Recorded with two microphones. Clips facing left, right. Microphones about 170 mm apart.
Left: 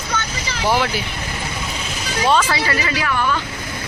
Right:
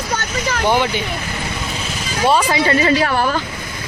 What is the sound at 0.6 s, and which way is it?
Speech, centre (ahead or behind).